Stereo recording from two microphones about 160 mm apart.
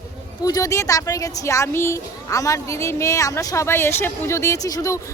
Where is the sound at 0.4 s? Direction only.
20° left (ahead or behind).